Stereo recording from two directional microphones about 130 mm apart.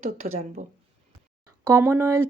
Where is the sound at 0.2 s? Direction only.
90° right.